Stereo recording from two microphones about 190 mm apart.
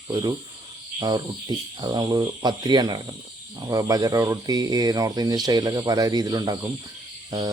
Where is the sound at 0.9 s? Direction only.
20° right (ahead or behind).